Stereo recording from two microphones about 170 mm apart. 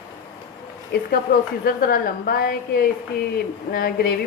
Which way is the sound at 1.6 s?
55° left (ahead or behind).